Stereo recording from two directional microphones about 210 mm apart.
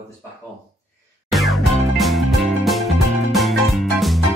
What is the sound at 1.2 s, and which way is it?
Music, centre (ahead or behind).